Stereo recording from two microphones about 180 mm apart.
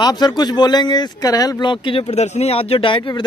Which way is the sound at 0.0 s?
20° left (ahead or behind).